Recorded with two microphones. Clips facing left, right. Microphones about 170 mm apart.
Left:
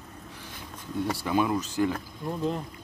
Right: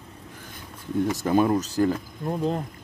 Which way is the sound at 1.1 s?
45° right (ahead or behind).